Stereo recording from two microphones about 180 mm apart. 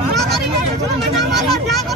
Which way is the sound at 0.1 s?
Centre (ahead or behind).